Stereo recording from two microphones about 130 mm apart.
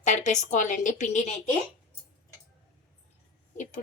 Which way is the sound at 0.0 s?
70° left (ahead or behind).